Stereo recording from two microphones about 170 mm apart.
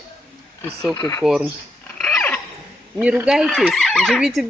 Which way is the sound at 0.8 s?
15° left (ahead or behind).